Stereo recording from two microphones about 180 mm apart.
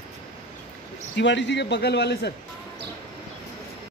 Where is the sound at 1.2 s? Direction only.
80° left.